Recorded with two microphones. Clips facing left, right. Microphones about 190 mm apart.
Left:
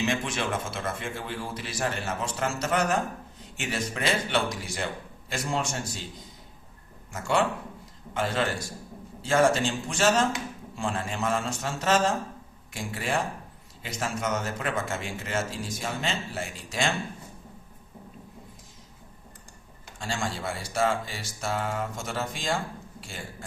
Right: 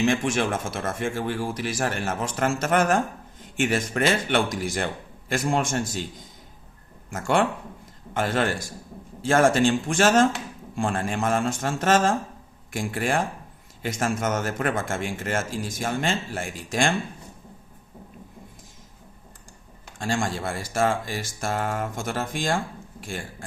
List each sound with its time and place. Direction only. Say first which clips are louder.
0.0 s speech: right 6 dB; 50° right (ahead or behind)
7.1 s speech: right 3 dB; 50° right (ahead or behind)
20.0 s speech: right 5 dB; 50° right (ahead or behind)